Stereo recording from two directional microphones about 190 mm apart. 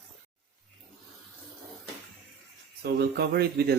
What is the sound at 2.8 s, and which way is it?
Speech, 55° right (ahead or behind).